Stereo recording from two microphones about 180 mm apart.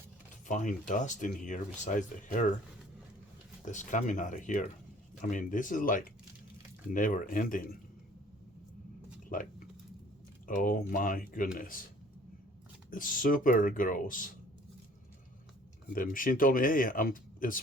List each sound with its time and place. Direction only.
0.4 s speech: 45° left (ahead or behind)
3.7 s speech: 45° left (ahead or behind)
9.3 s a sound: 50° left (ahead or behind)
10.4 s speech: 50° left (ahead or behind)
12.9 s speech: 50° left (ahead or behind)
16.0 s speech: 50° left (ahead or behind)